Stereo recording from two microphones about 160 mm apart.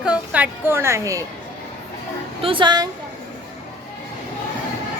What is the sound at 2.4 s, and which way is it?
Speech, 30° right (ahead or behind).